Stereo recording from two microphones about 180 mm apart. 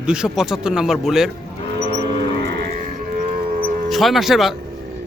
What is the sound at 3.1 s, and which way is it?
Music, 50° right (ahead or behind).